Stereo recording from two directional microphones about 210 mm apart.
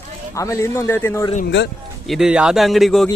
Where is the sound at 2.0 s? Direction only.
Centre (ahead or behind).